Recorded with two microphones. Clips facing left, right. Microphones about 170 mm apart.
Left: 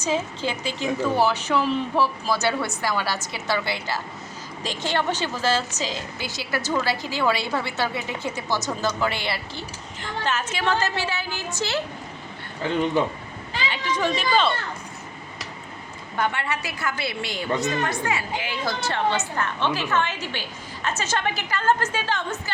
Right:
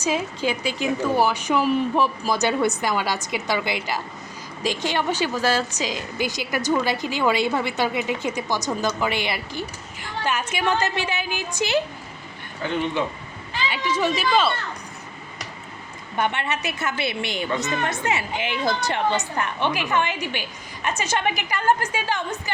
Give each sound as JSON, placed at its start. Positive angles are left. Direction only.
{"t": 0.0, "sound": "a woman's voice", "side_deg": -10}
{"t": 13.0, "sound": "speech", "side_deg": 40}
{"t": 13.7, "sound": "a woman's voice", "side_deg": -5}
{"t": 16.1, "sound": "a woman's voice", "side_deg": -20}